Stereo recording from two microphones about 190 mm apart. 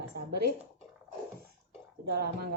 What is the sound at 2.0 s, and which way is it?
Speech, 60° right (ahead or behind).